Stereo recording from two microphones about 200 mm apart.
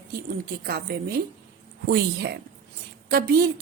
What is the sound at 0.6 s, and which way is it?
A woman's voice, 50° right (ahead or behind).